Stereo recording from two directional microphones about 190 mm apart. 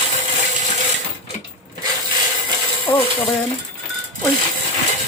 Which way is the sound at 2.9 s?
20° left (ahead or behind).